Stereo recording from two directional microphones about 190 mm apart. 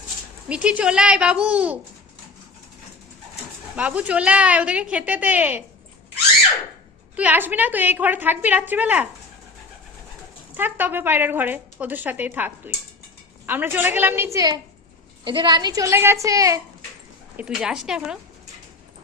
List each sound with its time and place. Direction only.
0.4 s speech: 5° right (ahead or behind)
3.8 s speech: 5° right (ahead or behind)
7.2 s speech: 10° right (ahead or behind)
10.5 s speech: 10° right (ahead or behind)
17.3 s a woman's voice: 5° right (ahead or behind)